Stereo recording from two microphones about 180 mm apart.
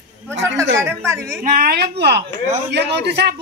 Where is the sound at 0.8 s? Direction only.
15° right (ahead or behind).